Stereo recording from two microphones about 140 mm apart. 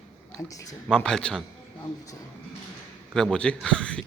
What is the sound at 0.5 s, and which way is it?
Speech, 25° left (ahead or behind).